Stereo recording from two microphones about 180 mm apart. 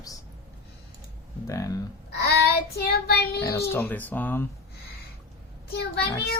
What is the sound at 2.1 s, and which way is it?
Child singing, 65° left (ahead or behind).